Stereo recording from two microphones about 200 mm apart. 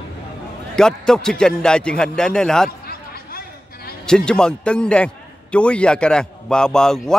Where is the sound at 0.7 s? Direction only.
5° left (ahead or behind).